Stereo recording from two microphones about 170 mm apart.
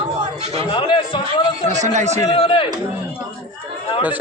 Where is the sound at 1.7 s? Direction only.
45° right (ahead or behind).